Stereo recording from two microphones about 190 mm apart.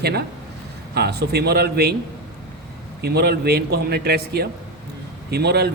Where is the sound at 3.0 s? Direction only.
55° right (ahead or behind).